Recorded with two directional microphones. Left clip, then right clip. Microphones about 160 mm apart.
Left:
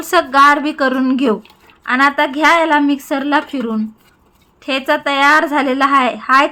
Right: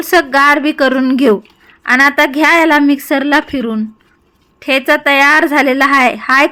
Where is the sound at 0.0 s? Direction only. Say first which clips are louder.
Right 1 dB; 30° right (ahead or behind).